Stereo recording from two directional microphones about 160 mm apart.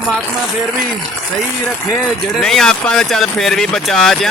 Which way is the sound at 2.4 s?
5° left (ahead or behind).